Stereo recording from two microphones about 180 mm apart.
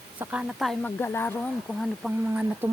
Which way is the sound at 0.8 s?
10° left (ahead or behind).